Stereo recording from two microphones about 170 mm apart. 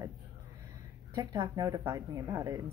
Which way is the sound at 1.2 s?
25° right (ahead or behind).